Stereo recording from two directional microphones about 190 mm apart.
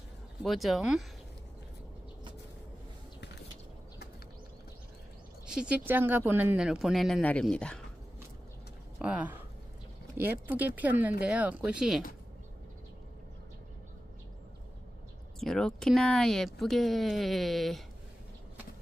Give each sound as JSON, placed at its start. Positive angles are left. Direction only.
{"t": 0.4, "sound": "speech", "side_deg": 0}
{"t": 5.5, "sound": "speech", "side_deg": -5}
{"t": 8.9, "sound": "speech", "side_deg": -5}
{"t": 15.4, "sound": "speech", "side_deg": 0}